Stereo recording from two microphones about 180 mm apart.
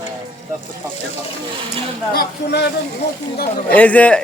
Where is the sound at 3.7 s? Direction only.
10° left (ahead or behind).